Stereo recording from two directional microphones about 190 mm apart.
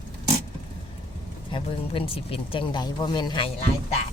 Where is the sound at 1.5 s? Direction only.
30° left (ahead or behind).